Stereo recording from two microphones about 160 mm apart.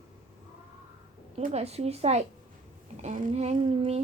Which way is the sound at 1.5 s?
40° right (ahead or behind).